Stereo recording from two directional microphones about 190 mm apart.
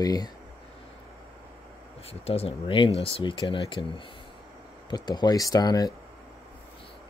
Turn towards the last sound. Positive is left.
turn(degrees=20)  # may be behind; listen again after turning